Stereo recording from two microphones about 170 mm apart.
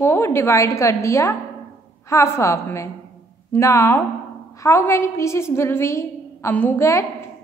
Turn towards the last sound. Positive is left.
turn(degrees=15)  # may be behind; listen again after turning